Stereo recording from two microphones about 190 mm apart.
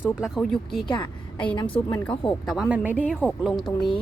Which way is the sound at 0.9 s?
25° left (ahead or behind).